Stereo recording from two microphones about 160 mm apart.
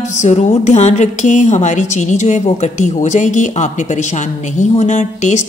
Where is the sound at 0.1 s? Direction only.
45° left (ahead or behind).